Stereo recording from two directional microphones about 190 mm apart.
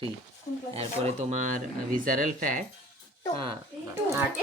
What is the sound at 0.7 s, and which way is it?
Speech, 35° right (ahead or behind).